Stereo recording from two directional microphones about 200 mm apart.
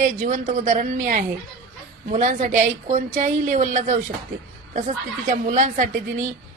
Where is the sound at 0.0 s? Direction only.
40° right (ahead or behind).